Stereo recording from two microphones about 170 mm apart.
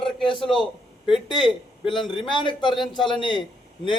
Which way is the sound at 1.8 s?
25° left (ahead or behind).